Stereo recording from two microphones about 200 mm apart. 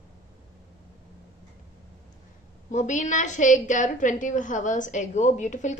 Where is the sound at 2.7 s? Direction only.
40° left (ahead or behind).